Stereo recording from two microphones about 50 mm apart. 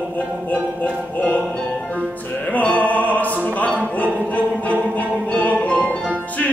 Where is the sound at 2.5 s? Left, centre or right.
Left.